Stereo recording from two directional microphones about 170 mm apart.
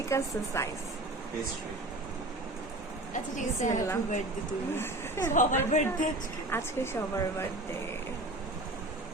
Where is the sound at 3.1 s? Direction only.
45° left (ahead or behind).